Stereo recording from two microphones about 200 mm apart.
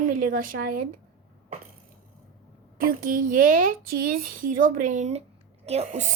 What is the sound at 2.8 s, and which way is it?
A woman's voice, 45° right (ahead or behind).